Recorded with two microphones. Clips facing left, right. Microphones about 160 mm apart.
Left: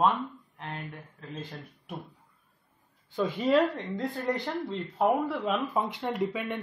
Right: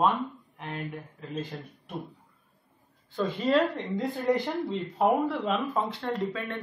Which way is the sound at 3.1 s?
10° left (ahead or behind).